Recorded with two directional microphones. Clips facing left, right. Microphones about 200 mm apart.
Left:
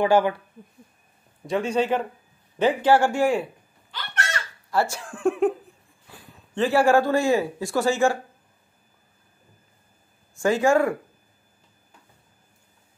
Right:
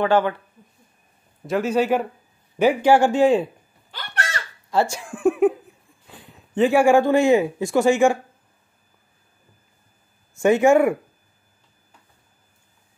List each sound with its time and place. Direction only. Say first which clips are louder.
0.0 s speech: even; 10° left (ahead or behind)
1.4 s speech: right 3 dB; 5° right (ahead or behind); by 3.4 s 20° right (ahead or behind)
4.6 s speech: right 3 dB; 15° right (ahead or behind)
6.5 s speech: right 3 dB; 15° right (ahead or behind)
10.4 s speech: right 4 dB; 20° right (ahead or behind)